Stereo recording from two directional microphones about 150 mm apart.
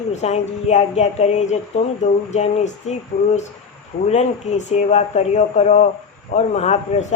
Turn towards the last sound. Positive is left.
turn(degrees=50)  # may be behind; listen again after turning